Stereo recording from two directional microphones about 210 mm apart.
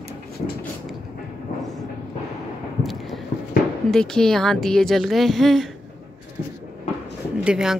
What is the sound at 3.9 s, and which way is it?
Speech, 5° left (ahead or behind).